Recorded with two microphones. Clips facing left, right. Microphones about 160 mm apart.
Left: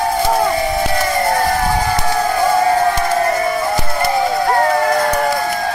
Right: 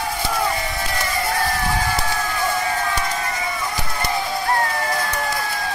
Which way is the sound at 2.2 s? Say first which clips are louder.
Left 9 dB; 45° left (ahead or behind).